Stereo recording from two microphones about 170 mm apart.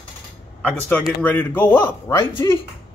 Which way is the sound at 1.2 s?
10° left (ahead or behind).